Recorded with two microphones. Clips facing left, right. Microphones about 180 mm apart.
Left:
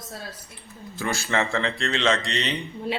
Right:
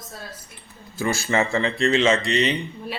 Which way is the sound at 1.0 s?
5° right (ahead or behind).